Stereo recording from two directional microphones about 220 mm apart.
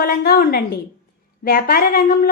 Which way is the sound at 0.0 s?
45° left (ahead or behind).